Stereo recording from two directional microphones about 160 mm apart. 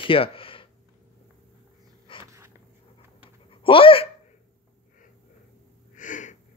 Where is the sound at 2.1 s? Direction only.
30° left (ahead or behind).